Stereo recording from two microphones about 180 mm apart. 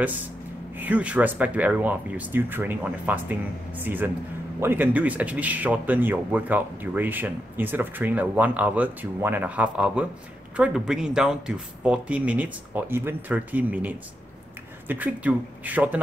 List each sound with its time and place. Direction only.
0.7 s speech: 10° right (ahead or behind)